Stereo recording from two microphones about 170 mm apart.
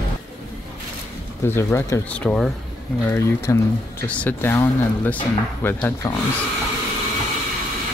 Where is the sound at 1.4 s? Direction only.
15° left (ahead or behind).